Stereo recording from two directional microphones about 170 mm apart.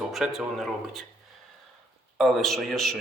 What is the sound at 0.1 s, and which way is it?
Speech, centre (ahead or behind).